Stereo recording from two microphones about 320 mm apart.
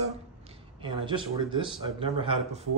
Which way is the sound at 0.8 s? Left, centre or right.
Centre.